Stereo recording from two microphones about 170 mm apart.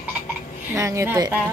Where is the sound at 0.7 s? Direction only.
15° right (ahead or behind).